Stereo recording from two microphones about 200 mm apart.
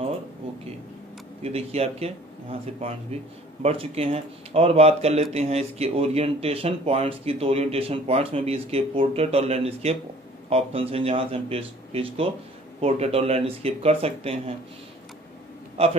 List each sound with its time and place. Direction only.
1.4 s speech: 30° right (ahead or behind)